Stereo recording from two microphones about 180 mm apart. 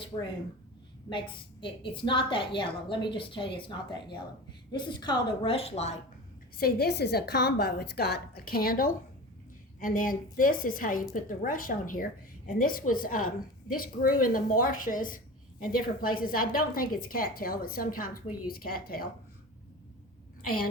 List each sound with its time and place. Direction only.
0.1 s a woman's voice: 30° left (ahead or behind)
6.6 s a woman's voice: 60° left (ahead or behind)